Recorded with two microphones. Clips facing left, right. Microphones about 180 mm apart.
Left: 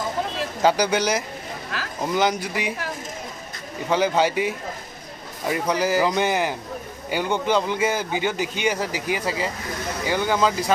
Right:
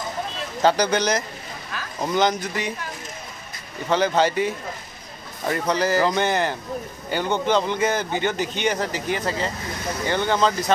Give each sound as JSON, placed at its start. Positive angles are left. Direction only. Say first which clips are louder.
{"t": 0.6, "sound": "speech", "louder": "right 1 dB", "side_deg": 10}
{"t": 1.7, "sound": "a sound", "louder": "left 2 dB", "side_deg": 90}
{"t": 2.1, "sound": "speech", "louder": "right 1 dB", "side_deg": 10}
{"t": 3.9, "sound": "speech", "louder": "even", "side_deg": 10}